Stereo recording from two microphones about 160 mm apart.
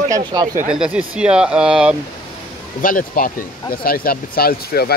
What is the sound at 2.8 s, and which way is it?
Speech, 60° left (ahead or behind).